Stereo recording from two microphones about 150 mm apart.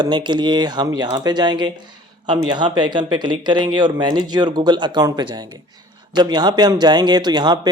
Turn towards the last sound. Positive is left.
turn(degrees=-30)  # may be behind; listen again after turning